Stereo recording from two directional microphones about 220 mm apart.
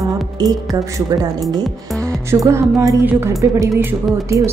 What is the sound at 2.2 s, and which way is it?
A woman's voice, 10° right (ahead or behind).